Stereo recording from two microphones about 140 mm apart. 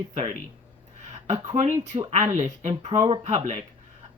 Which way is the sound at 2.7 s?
45° right (ahead or behind).